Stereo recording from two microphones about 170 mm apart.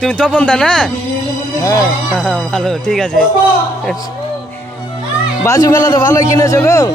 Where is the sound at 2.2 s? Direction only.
5° left (ahead or behind).